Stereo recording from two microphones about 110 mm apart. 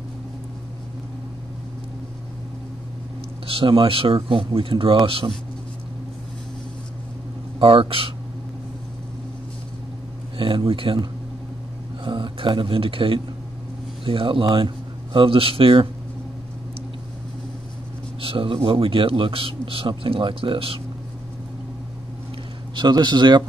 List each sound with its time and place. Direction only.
3.4 s speech: 55° right (ahead or behind)
7.5 s speech: 55° right (ahead or behind)
10.3 s a sound: 55° right (ahead or behind)
10.7 s speech: 55° right (ahead or behind)
18.2 s speech: 55° right (ahead or behind)
22.8 s speech: 40° right (ahead or behind)